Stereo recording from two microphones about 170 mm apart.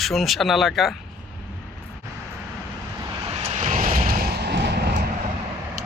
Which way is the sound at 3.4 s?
40° right (ahead or behind).